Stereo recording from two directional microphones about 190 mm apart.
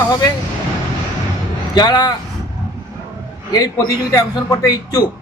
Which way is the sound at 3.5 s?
20° left (ahead or behind).